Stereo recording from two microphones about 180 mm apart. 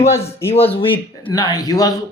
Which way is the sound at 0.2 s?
35° left (ahead or behind).